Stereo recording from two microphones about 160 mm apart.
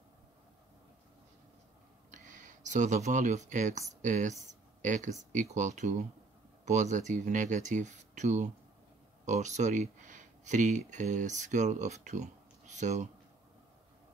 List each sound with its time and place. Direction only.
2.0 s speech: 50° right (ahead or behind)
4.5 s a sound: 50° right (ahead or behind)
5.3 s speech: 50° right (ahead or behind)